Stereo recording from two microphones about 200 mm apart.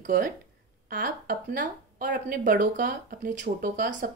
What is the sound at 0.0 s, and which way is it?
A woman's voice, 40° right (ahead or behind).